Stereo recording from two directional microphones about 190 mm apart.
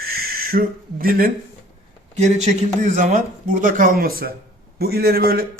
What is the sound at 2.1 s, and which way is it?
A man's voice, 40° right (ahead or behind).